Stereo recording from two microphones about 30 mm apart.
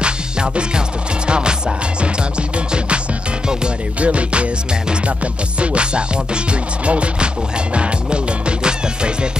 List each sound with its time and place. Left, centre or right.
0.0 s music: right
4.0 s music: right